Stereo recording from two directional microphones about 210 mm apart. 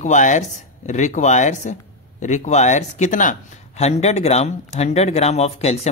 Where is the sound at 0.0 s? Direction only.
35° left (ahead or behind).